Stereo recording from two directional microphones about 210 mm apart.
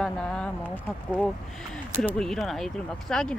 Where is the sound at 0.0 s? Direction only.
5° left (ahead or behind).